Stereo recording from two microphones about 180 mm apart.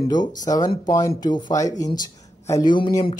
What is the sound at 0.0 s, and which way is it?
Speech, 25° left (ahead or behind).